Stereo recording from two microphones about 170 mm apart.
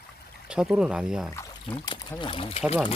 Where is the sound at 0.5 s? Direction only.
5° right (ahead or behind).